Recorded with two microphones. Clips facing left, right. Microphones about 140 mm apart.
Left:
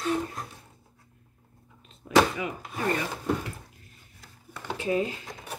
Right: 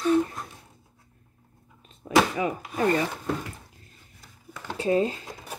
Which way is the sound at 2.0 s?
35° right (ahead or behind).